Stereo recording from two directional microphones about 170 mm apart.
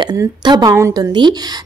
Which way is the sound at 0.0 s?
25° right (ahead or behind).